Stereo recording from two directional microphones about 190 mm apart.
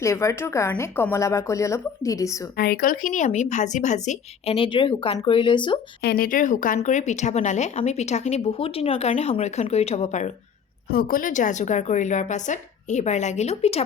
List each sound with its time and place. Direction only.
0.0 s a woman's voice: 15° left (ahead or behind)
2.6 s speech: 50° left (ahead or behind); by 5.8 s 25° left (ahead or behind)
6.0 s speech: 55° left (ahead or behind); by 10.3 s 40° left (ahead or behind)
10.8 s speech: 50° left (ahead or behind); by 13.8 s 35° left (ahead or behind)